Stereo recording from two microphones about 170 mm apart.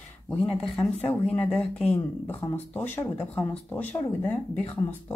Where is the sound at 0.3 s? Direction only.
5° left (ahead or behind).